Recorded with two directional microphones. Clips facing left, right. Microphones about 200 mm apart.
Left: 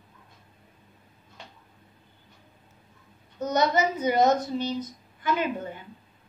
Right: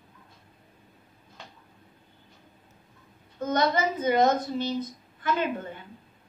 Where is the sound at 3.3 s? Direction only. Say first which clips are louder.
Left 1 dB; 15° left (ahead or behind).